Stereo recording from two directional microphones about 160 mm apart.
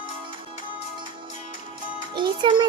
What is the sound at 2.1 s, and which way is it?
Speech, 30° right (ahead or behind).